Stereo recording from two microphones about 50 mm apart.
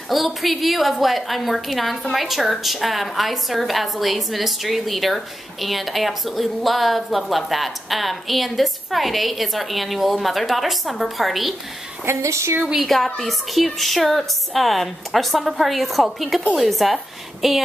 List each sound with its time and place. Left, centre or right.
0.1 s a woman's voice: centre
12.2 s speech: right
12.8 s a woman's voice: centre